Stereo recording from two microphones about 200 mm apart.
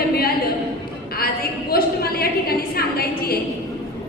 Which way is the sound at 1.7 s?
50° left (ahead or behind).